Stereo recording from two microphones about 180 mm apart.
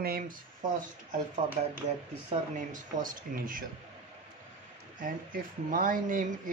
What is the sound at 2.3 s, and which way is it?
Speech, 45° right (ahead or behind).